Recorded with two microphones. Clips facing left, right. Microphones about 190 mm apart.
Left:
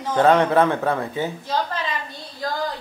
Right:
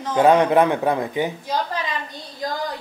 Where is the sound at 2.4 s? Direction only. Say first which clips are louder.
Even; 20° right (ahead or behind).